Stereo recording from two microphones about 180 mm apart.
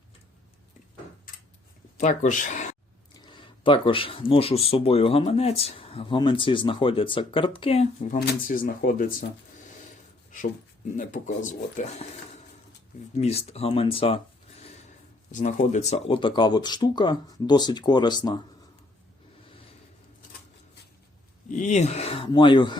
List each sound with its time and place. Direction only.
2.0 s speech: 40° left (ahead or behind)
3.2 s speech: 25° left (ahead or behind)
8.2 s speech: 55° left (ahead or behind)
10.9 s speech: 45° left (ahead or behind)
13.1 s speech: 35° left (ahead or behind)
14.7 s speech: 40° left (ahead or behind); by 18.2 s 25° left (ahead or behind)
21.5 s speech: 40° left (ahead or behind); by 22.8 s 25° left (ahead or behind)